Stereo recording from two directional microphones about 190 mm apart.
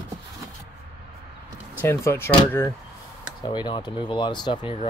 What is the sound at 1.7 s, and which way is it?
Speech, 15° left (ahead or behind).